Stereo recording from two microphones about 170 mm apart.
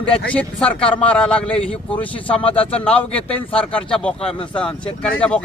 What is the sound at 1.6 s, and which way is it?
Speech, 35° left (ahead or behind).